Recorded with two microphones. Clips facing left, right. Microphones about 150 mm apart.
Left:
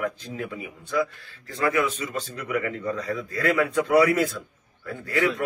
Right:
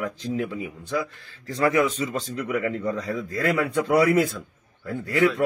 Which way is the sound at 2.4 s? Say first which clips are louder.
Right 2 dB; 25° right (ahead or behind).